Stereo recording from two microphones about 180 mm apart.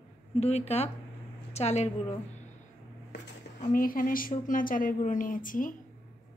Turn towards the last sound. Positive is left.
turn(degrees=50)  # may be behind; listen again after turning